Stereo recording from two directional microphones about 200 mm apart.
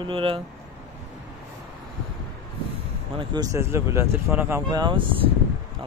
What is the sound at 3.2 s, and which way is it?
Speech, 15° right (ahead or behind).